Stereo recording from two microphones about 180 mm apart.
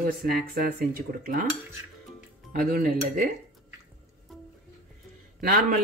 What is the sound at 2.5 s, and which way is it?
Speech, 55° right (ahead or behind).